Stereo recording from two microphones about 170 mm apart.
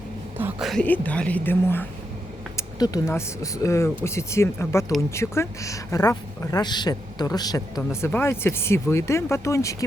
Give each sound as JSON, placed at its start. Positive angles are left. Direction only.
{"t": 0.3, "sound": "a sound", "side_deg": -10}
{"t": 0.7, "sound": "speech", "side_deg": 5}
{"t": 2.6, "sound": "speech", "side_deg": 20}